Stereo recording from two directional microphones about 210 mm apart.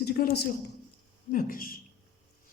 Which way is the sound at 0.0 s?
45° left (ahead or behind).